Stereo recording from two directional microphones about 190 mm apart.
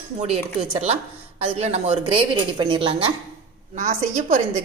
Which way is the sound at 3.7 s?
45° right (ahead or behind).